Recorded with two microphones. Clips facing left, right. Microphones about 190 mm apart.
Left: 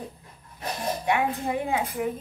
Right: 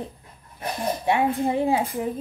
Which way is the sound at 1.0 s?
30° right (ahead or behind).